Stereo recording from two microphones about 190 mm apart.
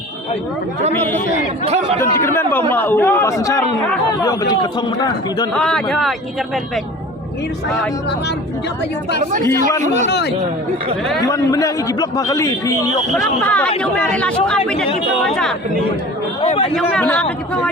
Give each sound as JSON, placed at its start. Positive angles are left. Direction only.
{"t": 1.6, "sound": "speech", "side_deg": -35}
{"t": 2.0, "sound": "a man's voice", "side_deg": 15}
{"t": 5.5, "sound": "speech", "side_deg": 5}
{"t": 10.1, "sound": "speech", "side_deg": 65}
{"t": 11.3, "sound": "a man's voice", "side_deg": 15}
{"t": 16.4, "sound": "speech", "side_deg": 30}
{"t": 17.0, "sound": "speech", "side_deg": 5}